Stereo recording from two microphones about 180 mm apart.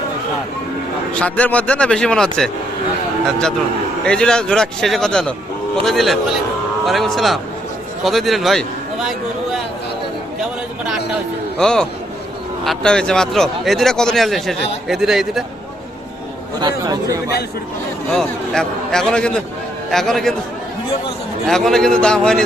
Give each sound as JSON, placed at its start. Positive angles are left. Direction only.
{"t": 1.1, "sound": "a man's voice", "side_deg": 5}
{"t": 11.5, "sound": "speech", "side_deg": 5}
{"t": 16.6, "sound": "speech", "side_deg": -25}
{"t": 18.1, "sound": "speech", "side_deg": 5}
{"t": 21.4, "sound": "speech", "side_deg": 0}